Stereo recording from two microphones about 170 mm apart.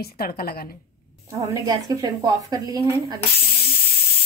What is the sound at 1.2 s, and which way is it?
A woman's voice, 15° right (ahead or behind).